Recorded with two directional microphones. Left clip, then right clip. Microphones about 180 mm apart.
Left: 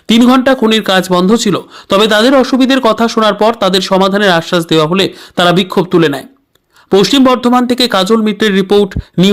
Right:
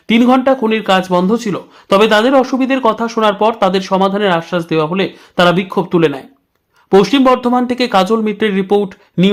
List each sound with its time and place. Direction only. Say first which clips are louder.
0.1 s speech: left 2 dB; 25° left (ahead or behind)